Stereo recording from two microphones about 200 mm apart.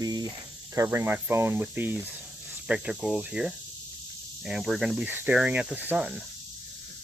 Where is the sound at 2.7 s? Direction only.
5° right (ahead or behind).